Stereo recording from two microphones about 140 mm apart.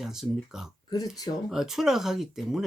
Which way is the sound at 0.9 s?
30° left (ahead or behind).